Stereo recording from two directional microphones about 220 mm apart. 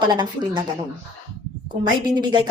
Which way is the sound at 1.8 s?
20° right (ahead or behind).